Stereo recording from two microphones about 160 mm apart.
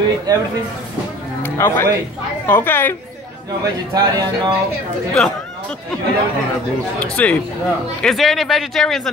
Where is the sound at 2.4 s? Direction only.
10° left (ahead or behind).